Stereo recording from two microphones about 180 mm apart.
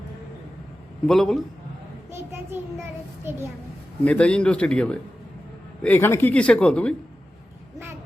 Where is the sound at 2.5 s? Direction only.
10° right (ahead or behind).